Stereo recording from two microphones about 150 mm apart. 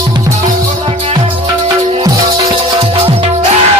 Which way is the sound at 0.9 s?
35° right (ahead or behind).